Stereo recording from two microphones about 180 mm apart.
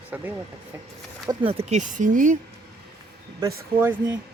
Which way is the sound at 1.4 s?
35° right (ahead or behind).